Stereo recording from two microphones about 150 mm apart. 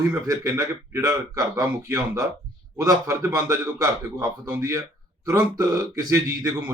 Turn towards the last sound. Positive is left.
turn(degrees=-20)  # may be behind; listen again after turning